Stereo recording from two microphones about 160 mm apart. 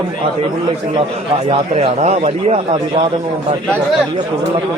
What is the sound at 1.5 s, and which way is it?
Speech, 40° right (ahead or behind).